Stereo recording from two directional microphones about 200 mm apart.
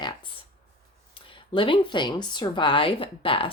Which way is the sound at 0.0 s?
25° left (ahead or behind).